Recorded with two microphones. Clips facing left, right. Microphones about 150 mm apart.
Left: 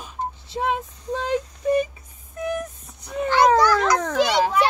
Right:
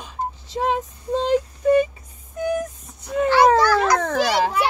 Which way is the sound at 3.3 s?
5° right (ahead or behind).